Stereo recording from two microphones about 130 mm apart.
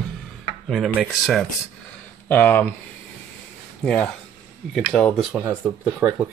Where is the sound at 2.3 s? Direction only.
15° left (ahead or behind).